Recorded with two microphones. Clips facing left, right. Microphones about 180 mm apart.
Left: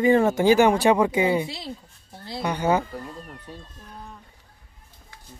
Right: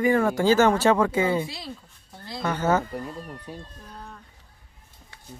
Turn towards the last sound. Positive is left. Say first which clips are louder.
# right 2 dB
turn(degrees=-10)  # may be behind; listen again after turning